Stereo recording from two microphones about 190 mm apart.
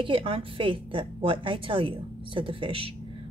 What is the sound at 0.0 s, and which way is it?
A woman's voice, 25° right (ahead or behind).